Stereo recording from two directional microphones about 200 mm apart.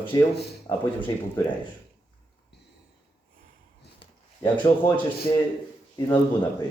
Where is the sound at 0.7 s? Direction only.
25° left (ahead or behind).